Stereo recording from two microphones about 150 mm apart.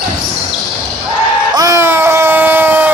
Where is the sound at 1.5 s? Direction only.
20° right (ahead or behind).